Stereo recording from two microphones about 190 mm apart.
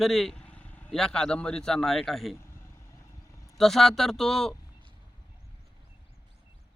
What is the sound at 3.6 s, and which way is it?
Speech, centre (ahead or behind).